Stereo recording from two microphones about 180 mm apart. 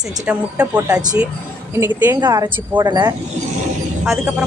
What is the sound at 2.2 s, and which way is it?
Speech, 20° right (ahead or behind).